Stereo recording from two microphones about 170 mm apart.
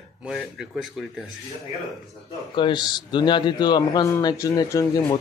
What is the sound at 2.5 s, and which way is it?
A man's voice, 25° left (ahead or behind).